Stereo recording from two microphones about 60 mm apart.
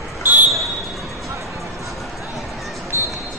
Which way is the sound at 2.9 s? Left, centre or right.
Right.